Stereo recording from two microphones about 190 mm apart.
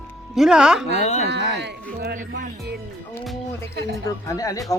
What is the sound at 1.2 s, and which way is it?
Speech, 60° right (ahead or behind).